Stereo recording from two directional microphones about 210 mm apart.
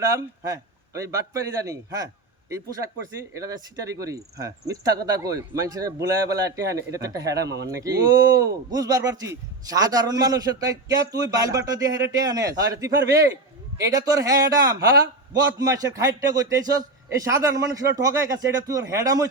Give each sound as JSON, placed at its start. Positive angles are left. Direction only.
{"t": 0.2, "sound": "speech", "side_deg": -15}
{"t": 3.3, "sound": "speech", "side_deg": -15}
{"t": 7.4, "sound": "speech", "side_deg": -55}
{"t": 7.8, "sound": "a man's voice", "side_deg": -15}